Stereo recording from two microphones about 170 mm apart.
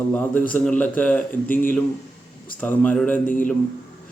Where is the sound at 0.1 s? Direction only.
10° left (ahead or behind).